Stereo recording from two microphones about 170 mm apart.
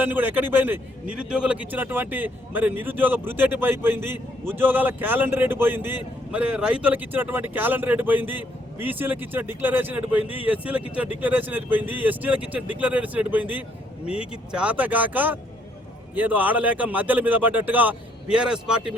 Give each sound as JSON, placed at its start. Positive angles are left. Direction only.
{"t": 0.0, "sound": "a man's voice", "side_deg": -10}